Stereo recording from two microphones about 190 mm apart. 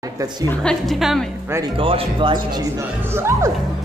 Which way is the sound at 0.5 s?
5° left (ahead or behind).